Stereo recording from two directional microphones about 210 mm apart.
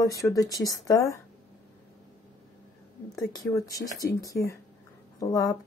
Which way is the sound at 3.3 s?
15° left (ahead or behind).